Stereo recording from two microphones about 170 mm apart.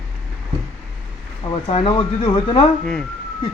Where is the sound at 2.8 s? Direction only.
5° left (ahead or behind).